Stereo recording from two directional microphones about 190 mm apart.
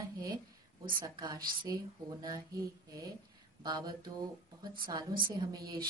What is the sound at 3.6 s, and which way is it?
Speech, 20° right (ahead or behind).